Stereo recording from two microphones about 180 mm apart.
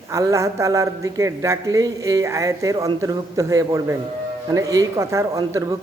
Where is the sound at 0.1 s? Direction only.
15° right (ahead or behind).